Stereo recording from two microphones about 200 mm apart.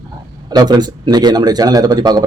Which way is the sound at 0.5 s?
20° right (ahead or behind).